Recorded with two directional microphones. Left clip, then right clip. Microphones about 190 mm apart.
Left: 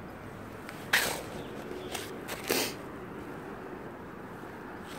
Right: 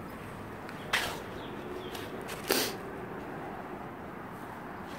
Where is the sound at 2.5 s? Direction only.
10° left (ahead or behind).